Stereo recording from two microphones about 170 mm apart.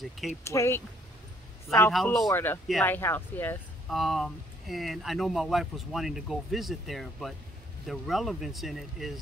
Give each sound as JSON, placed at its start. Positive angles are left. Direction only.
{"t": 0.4, "sound": "speech", "side_deg": 15}
{"t": 1.9, "sound": "speech", "side_deg": 0}
{"t": 2.2, "sound": "speech", "side_deg": 15}
{"t": 3.9, "sound": "speech", "side_deg": 0}